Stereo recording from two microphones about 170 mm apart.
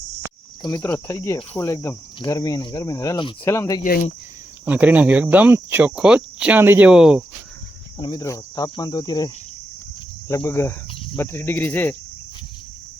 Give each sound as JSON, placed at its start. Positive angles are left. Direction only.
{"t": 0.6, "sound": "speech", "side_deg": 20}
{"t": 3.8, "sound": "speech", "side_deg": 55}
{"t": 4.6, "sound": "cricket", "side_deg": -10}
{"t": 7.9, "sound": "speech", "side_deg": 30}